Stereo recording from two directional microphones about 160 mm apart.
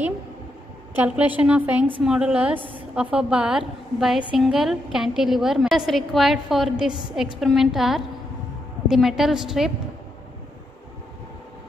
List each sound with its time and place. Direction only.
0.9 s a woman's voice: 10° right (ahead or behind)